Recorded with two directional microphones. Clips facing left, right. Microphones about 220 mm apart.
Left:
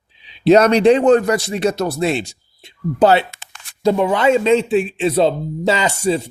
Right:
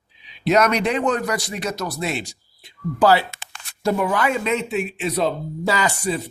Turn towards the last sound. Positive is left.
turn(degrees=25)  # may be behind; listen again after turning